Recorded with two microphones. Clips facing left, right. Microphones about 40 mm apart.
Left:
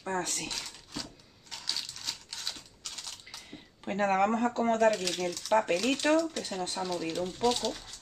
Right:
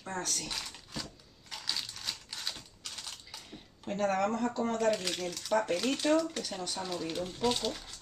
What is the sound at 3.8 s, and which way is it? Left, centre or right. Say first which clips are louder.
Speech: left 3 dB; left.